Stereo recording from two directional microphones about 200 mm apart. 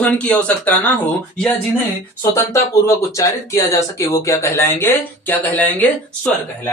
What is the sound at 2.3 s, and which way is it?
Speech, 15° left (ahead or behind).